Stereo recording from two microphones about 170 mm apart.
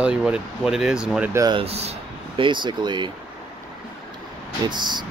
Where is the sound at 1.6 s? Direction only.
35° right (ahead or behind).